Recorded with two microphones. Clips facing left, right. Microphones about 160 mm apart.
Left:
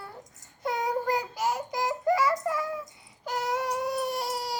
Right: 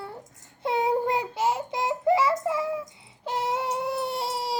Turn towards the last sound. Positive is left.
turn(degrees=-25)  # may be behind; listen again after turning